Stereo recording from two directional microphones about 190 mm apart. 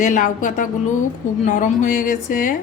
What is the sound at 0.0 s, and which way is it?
Speech, 45° left (ahead or behind).